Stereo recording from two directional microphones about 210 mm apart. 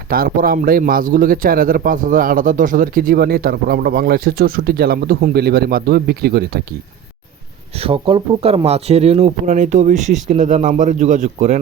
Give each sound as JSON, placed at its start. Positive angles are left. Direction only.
{"t": 0.1, "sound": "a man's voice", "side_deg": -45}
{"t": 7.8, "sound": "speech", "side_deg": -25}